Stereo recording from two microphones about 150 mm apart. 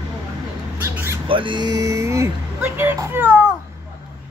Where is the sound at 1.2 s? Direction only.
35° right (ahead or behind); by 3.3 s 15° right (ahead or behind).